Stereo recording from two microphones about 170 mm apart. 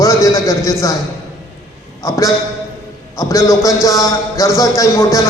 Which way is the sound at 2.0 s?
20° left (ahead or behind).